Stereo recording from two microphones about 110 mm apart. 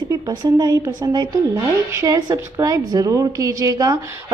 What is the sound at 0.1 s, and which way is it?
A woman's voice, 40° right (ahead or behind).